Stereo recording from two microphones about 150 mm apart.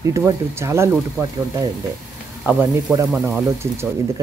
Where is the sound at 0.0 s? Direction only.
20° right (ahead or behind).